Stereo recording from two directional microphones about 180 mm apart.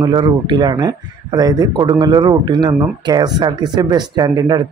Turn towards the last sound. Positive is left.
turn(degrees=-25)  # may be behind; listen again after turning